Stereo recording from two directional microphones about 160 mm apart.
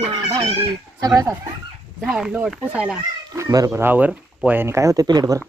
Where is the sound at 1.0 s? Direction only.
25° right (ahead or behind).